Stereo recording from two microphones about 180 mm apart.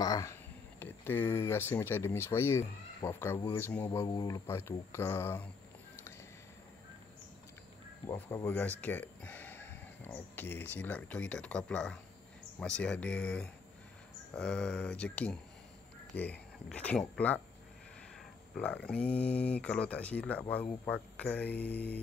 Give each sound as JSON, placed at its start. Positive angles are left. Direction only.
{"t": 0.0, "sound": "speech", "side_deg": 20}
{"t": 4.0, "sound": "speech", "side_deg": 20}
{"t": 8.1, "sound": "speech", "side_deg": 15}
{"t": 18.6, "sound": "speech", "side_deg": 5}